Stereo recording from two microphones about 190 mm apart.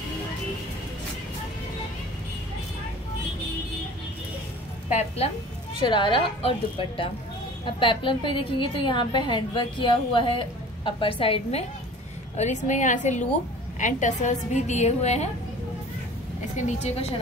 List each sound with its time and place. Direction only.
4.9 s a woman's voice: 30° left (ahead or behind)
16.5 s a woman's voice: 35° left (ahead or behind)